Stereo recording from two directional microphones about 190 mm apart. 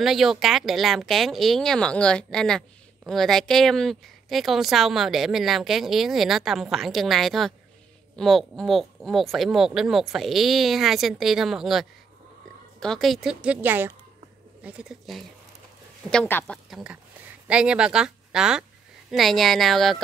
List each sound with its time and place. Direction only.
0.0 s speech: centre (ahead or behind)
16.7 s a woman's voice: 5° right (ahead or behind)